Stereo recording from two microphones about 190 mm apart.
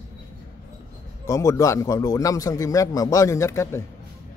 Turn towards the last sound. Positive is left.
turn(degrees=15)  # may be behind; listen again after turning